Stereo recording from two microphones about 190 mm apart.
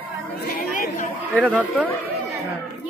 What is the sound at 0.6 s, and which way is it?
Chatter, 45° left (ahead or behind).